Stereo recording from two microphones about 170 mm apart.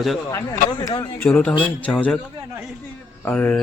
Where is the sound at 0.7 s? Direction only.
20° left (ahead or behind).